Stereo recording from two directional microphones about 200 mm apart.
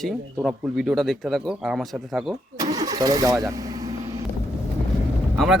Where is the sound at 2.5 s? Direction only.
20° right (ahead or behind).